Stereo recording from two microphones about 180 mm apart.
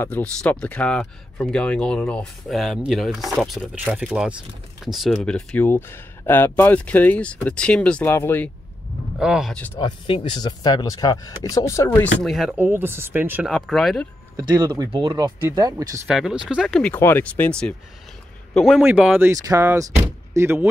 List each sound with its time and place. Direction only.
0.0 s speech: 5° left (ahead or behind)
9.2 s speech: 5° right (ahead or behind)
9.8 s speech: 25° left (ahead or behind)
12.2 s speech: centre (ahead or behind)
14.3 s speech: 25° right (ahead or behind)
16.1 s speech: 5° right (ahead or behind)
16.9 s speech: 10° left (ahead or behind); by 20.6 s 15° right (ahead or behind)